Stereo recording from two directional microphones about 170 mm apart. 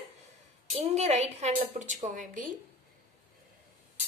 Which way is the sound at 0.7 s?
40° right (ahead or behind).